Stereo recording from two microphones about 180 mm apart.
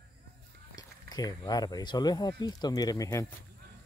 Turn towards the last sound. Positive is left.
turn(degrees=20)  # may be behind; listen again after turning